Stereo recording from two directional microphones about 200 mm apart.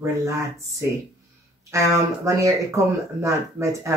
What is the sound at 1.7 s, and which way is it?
Speech, 15° right (ahead or behind).